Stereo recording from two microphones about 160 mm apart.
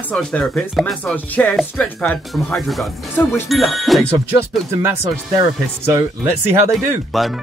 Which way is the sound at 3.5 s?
Centre (ahead or behind).